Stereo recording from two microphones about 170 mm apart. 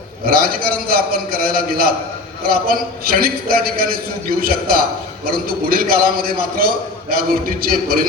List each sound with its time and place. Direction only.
0.3 s a man's voice: 60° right (ahead or behind)